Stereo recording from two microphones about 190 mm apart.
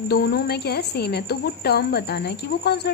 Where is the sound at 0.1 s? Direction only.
55° left (ahead or behind).